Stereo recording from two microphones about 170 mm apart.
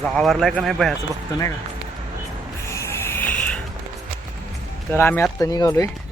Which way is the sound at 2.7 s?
15° left (ahead or behind).